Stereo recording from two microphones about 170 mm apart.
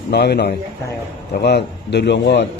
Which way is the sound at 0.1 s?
75° left (ahead or behind).